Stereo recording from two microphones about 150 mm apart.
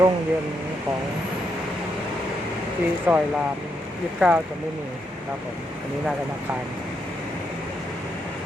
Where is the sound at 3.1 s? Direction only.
10° right (ahead or behind).